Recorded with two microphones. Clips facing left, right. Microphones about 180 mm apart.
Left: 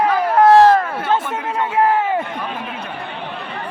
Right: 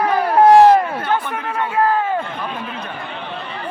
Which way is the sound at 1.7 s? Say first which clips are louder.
Left 1 dB; 20° left (ahead or behind).